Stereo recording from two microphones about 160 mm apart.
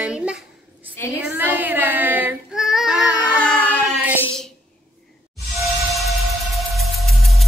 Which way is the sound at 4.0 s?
10° right (ahead or behind).